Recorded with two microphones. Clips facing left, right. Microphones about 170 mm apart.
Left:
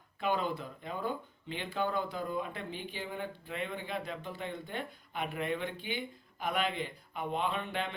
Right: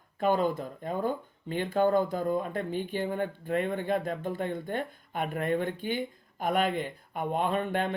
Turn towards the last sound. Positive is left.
turn(degrees=-50)  # may be behind; listen again after turning